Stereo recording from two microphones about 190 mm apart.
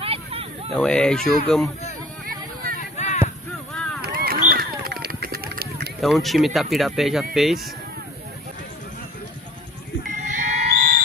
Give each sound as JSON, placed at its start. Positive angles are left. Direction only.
{"t": 0.0, "sound": "a sound", "side_deg": -30}
{"t": 0.7, "sound": "speech", "side_deg": 5}
{"t": 3.0, "sound": "a sound", "side_deg": 35}
{"t": 3.7, "sound": "run", "side_deg": 5}
{"t": 4.0, "sound": "run", "side_deg": -50}
{"t": 5.9, "sound": "speech", "side_deg": 0}
{"t": 10.2, "sound": "music", "side_deg": -40}